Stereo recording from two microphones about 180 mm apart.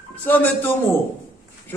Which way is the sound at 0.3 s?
10° left (ahead or behind).